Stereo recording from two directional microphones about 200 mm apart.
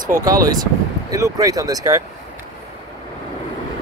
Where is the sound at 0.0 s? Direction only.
20° right (ahead or behind).